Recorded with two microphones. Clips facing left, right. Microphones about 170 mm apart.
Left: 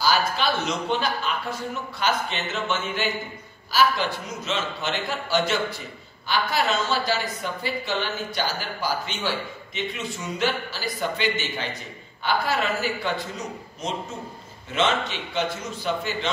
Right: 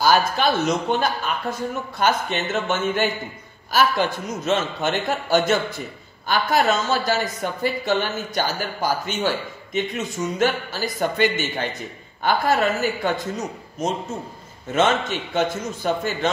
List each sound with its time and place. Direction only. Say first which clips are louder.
0.0 s a man's voice: right 5 dB; 50° right (ahead or behind)